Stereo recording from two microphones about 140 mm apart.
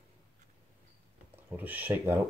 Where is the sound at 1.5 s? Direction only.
10° right (ahead or behind).